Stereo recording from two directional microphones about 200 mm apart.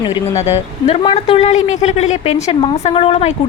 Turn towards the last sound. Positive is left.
turn(degrees=30)  # may be behind; listen again after turning